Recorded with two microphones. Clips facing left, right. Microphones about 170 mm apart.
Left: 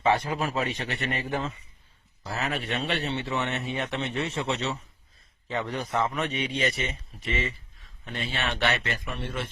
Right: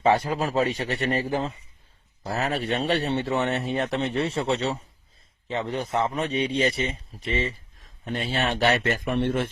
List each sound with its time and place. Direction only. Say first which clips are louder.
0.0 s a man's voice: right 3 dB; 35° right (ahead or behind); by 9.5 s 55° right (ahead or behind)